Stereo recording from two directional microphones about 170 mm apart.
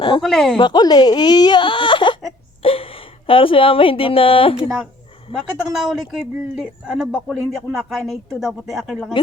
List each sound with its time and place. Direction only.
0.2 s speech: centre (ahead or behind)
0.5 s speech: 25° left (ahead or behind)
5.5 s speech: centre (ahead or behind)